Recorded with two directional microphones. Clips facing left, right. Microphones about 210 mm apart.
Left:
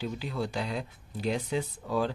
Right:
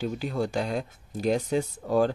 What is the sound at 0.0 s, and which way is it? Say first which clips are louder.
Speech: right 5 dB; 45° right (ahead or behind).